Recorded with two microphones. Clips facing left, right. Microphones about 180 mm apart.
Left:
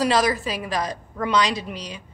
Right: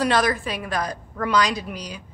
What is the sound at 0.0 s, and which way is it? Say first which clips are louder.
A woman's voice: left 1 dB; 5° left (ahead or behind).